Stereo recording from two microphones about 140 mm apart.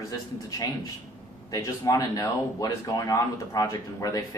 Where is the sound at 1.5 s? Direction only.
25° left (ahead or behind).